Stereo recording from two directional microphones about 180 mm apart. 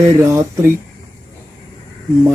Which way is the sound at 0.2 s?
15° right (ahead or behind).